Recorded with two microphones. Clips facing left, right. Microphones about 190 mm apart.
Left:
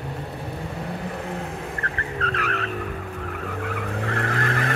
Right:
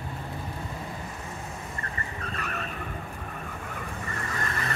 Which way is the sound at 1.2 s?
65° left (ahead or behind).